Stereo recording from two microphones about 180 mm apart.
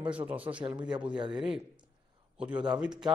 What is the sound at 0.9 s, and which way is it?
A man's voice, 5° right (ahead or behind).